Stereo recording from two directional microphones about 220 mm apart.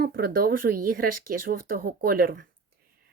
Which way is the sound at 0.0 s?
45° right (ahead or behind).